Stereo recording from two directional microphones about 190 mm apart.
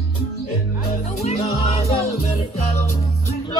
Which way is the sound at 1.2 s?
35° left (ahead or behind).